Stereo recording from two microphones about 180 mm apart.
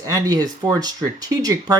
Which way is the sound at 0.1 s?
20° right (ahead or behind).